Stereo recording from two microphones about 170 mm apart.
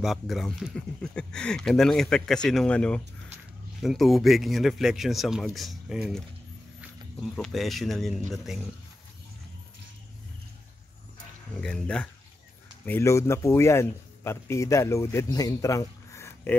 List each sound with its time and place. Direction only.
0.0 s speech: centre (ahead or behind)
11.6 s speech: 5° left (ahead or behind)